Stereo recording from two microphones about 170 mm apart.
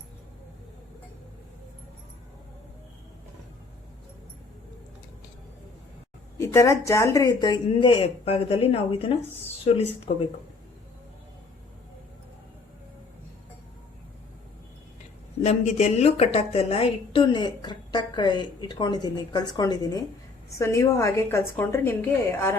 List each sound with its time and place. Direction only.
6.3 s a woman's voice: 15° left (ahead or behind); by 9.8 s 35° left (ahead or behind)
10.1 s speech: 60° left (ahead or behind)
15.4 s a woman's voice: 40° left (ahead or behind); by 22.5 s 10° left (ahead or behind)